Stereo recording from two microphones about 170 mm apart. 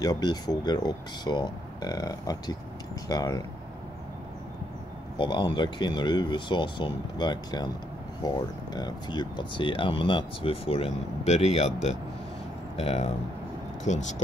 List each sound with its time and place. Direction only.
0.0 s speech: 25° left (ahead or behind)
5.2 s speech: 30° left (ahead or behind); by 14.1 s 45° left (ahead or behind)